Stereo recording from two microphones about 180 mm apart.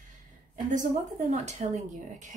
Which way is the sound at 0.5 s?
45° right (ahead or behind).